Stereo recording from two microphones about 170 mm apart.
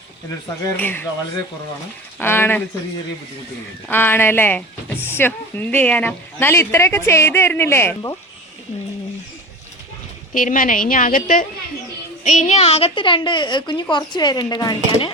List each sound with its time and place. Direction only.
0.8 s speech: 10° left (ahead or behind)
2.1 s speech: 15° left (ahead or behind)
3.8 s speech: 10° left (ahead or behind)
10.3 s a woman's voice: 50° left (ahead or behind); by 15.1 s 25° left (ahead or behind)